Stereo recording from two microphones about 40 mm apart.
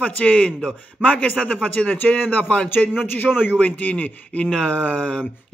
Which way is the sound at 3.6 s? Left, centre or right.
Left.